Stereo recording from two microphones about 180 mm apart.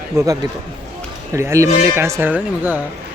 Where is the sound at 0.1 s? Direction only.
15° right (ahead or behind).